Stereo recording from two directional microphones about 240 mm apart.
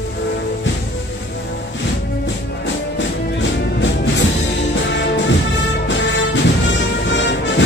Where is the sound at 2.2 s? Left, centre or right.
Left.